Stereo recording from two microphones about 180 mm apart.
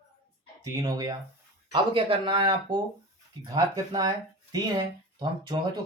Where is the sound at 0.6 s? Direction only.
20° right (ahead or behind).